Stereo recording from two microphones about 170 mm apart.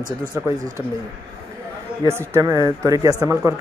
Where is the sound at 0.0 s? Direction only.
50° right (ahead or behind).